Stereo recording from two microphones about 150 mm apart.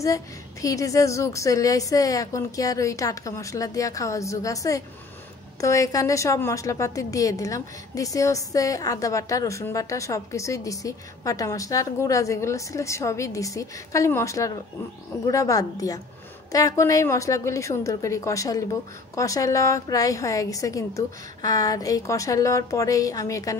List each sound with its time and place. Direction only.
0.0 s a woman's voice: 20° left (ahead or behind)